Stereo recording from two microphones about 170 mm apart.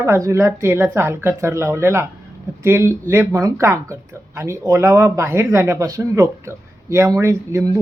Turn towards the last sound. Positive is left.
turn(degrees=-15)  # may be behind; listen again after turning